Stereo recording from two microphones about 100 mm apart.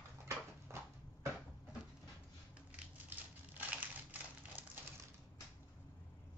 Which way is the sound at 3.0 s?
20° right (ahead or behind).